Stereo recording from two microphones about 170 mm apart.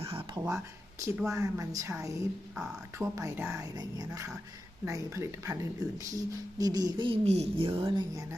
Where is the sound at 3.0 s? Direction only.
15° right (ahead or behind).